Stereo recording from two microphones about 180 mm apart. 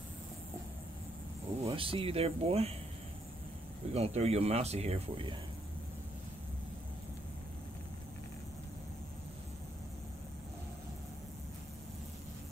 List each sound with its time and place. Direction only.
1.6 s speech: 30° right (ahead or behind)
3.9 s speech: 35° right (ahead or behind)